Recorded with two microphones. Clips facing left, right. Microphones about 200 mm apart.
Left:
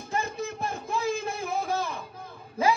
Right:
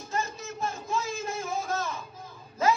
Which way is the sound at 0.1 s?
60° left (ahead or behind).